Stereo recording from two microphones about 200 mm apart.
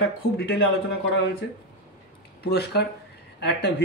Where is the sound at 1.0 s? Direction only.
55° left (ahead or behind).